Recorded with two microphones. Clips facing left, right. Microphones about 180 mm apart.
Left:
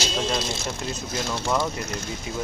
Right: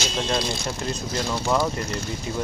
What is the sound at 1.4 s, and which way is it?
Speech, 5° right (ahead or behind).